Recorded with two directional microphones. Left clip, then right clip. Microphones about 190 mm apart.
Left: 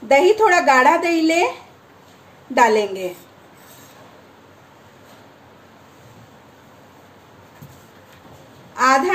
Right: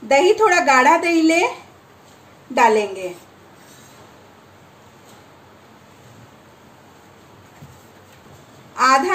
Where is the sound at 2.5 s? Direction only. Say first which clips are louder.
Even; 15° left (ahead or behind).